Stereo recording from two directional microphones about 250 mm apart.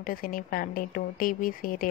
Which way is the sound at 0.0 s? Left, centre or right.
Left.